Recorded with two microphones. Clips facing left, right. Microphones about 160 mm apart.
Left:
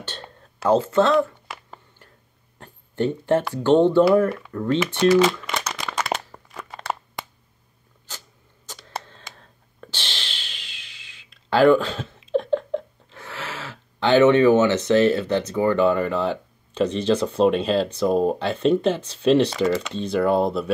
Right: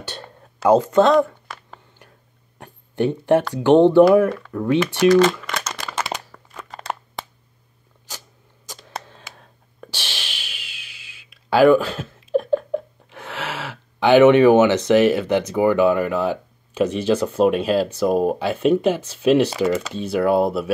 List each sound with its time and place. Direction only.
0.0 s whispering: 10° right (ahead or behind)
1.1 s a sound: 5° left (ahead or behind)
2.6 s a sound: 15° right (ahead or behind)
3.5 s speech: 15° right (ahead or behind)
5.1 s shuffling cards: 5° left (ahead or behind)
6.1 s crunch: 25° left (ahead or behind)
6.5 s crunch: 5° left (ahead or behind)
9.0 s a sound: 10° right (ahead or behind)
13.9 s speech: 10° right (ahead or behind)